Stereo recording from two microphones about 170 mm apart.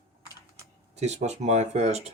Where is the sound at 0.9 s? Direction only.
40° right (ahead or behind).